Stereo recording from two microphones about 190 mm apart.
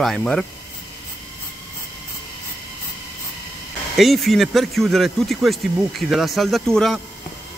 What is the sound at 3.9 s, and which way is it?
Speech, centre (ahead or behind).